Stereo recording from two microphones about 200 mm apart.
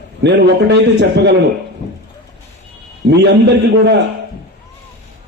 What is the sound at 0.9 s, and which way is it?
Speech, 55° right (ahead or behind).